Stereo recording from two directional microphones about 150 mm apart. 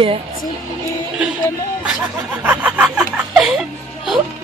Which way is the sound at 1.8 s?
10° right (ahead or behind).